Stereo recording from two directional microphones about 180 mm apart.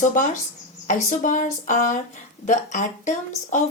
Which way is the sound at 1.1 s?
45° left (ahead or behind).